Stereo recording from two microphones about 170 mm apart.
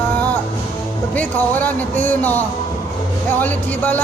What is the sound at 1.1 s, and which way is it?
A man's voice, 10° left (ahead or behind).